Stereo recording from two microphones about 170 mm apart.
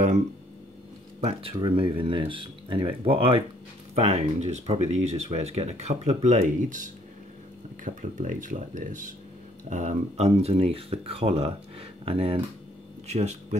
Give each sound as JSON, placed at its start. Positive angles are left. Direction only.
{"t": 1.2, "sound": "speech", "side_deg": -30}